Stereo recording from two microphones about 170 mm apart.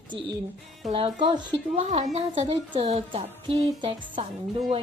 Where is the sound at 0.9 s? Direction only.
35° right (ahead or behind).